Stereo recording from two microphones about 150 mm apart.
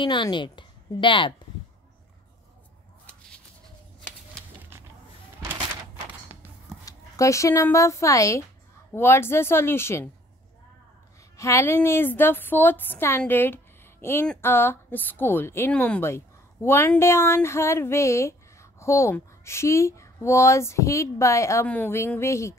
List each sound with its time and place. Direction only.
0.0 s a woman's voice: 30° left (ahead or behind)
6.8 s a woman's voice: 20° left (ahead or behind)
11.3 s a woman's voice: 20° left (ahead or behind)